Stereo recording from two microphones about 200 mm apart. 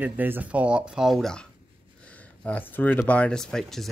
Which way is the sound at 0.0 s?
10° right (ahead or behind).